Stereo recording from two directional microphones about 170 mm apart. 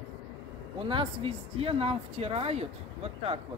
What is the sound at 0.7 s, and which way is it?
Speech, 30° right (ahead or behind).